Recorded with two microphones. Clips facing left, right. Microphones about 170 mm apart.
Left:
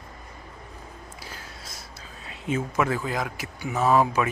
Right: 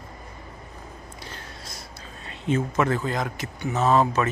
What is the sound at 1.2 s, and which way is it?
Speech, 5° left (ahead or behind).